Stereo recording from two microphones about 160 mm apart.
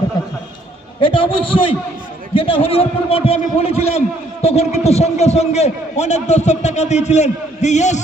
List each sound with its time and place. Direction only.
1.0 s a man's voice: 35° left (ahead or behind)